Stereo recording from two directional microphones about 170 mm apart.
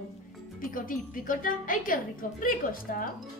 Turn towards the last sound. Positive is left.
turn(degrees=55)  # may be behind; listen again after turning